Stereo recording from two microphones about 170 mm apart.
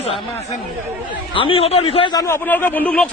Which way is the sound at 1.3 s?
30° left (ahead or behind).